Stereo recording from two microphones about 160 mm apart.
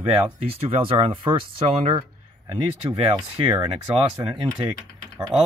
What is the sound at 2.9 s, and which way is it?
Speech, 35° right (ahead or behind).